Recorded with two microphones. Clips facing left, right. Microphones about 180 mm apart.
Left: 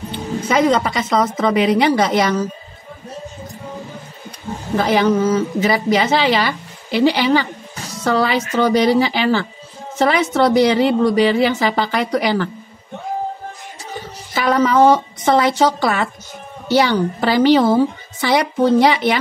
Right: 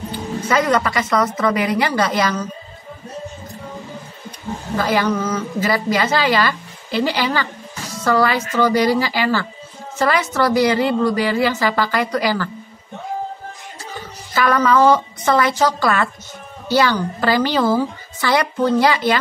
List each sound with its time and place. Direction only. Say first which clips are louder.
0.1 s a woman's voice: left 1 dB; 20° left (ahead or behind)
4.7 s a woman's voice: left 4 dB; 20° left (ahead or behind)
14.3 s a woman's voice: left 1 dB; 20° left (ahead or behind)